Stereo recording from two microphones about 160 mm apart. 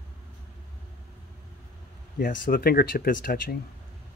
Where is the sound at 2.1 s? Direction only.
60° left (ahead or behind).